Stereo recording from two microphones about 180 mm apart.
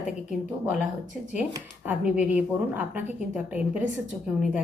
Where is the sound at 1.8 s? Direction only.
10° right (ahead or behind).